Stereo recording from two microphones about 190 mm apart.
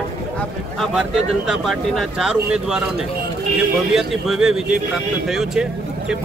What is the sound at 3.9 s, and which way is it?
Speech, centre (ahead or behind).